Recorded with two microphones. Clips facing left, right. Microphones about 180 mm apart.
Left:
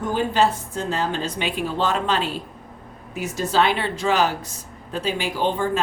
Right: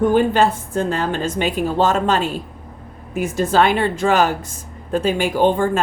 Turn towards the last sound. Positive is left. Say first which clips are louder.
# right 6 dB
turn(degrees=-50)  # may be behind; listen again after turning